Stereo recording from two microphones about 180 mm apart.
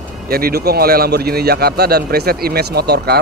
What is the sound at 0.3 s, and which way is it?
Speech, 60° right (ahead or behind).